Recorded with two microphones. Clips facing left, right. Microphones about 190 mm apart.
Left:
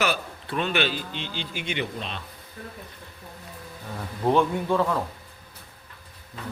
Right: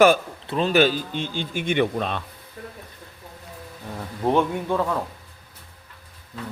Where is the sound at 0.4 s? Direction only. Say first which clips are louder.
Right 7 dB; 30° right (ahead or behind); by 2.2 s 50° right (ahead or behind).